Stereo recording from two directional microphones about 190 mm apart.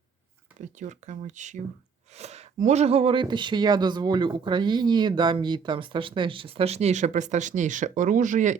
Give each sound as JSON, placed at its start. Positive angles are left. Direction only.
{"t": 0.6, "sound": "speech", "side_deg": -40}